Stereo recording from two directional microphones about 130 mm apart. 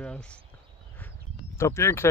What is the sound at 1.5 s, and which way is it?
Speech, 20° left (ahead or behind).